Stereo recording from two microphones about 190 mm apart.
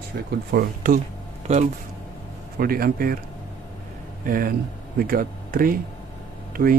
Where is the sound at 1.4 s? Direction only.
35° right (ahead or behind).